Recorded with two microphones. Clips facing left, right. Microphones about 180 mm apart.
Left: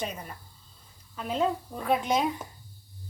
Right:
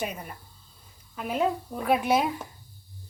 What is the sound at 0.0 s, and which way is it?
Speech, 10° right (ahead or behind).